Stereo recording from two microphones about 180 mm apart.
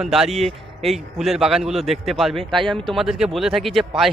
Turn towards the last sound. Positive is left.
turn(degrees=0)  # may be behind; listen again after turning